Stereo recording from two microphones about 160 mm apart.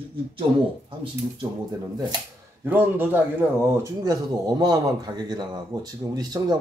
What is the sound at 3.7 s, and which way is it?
Speech, 20° right (ahead or behind).